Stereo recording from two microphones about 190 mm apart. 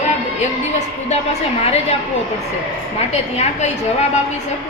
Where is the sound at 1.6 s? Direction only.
35° left (ahead or behind).